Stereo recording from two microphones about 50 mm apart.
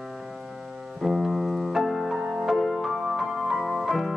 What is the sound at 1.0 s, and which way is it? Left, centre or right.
Piano, centre.